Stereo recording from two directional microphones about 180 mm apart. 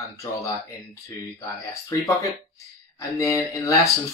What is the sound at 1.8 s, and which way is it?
Speech, 20° left (ahead or behind).